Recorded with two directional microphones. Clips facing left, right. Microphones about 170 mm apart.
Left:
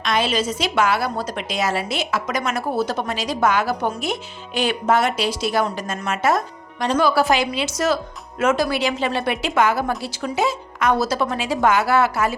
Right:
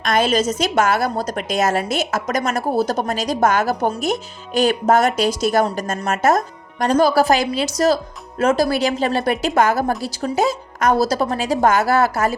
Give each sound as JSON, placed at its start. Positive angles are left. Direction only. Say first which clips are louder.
{"t": 0.0, "sound": "a woman's voice", "louder": "right 4 dB", "side_deg": -45}